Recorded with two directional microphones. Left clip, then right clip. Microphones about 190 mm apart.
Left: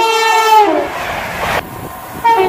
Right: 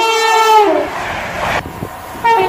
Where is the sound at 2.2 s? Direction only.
10° right (ahead or behind).